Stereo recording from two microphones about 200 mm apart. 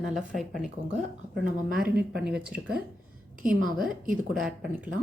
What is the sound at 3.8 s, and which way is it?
Speech, 40° right (ahead or behind).